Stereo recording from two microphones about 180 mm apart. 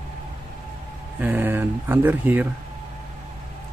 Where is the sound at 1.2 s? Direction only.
10° right (ahead or behind).